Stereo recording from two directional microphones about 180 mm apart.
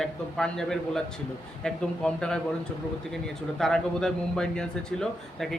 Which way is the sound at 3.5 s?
Centre (ahead or behind).